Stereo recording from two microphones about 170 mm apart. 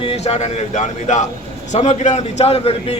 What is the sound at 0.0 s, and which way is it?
A man's voice, 35° left (ahead or behind).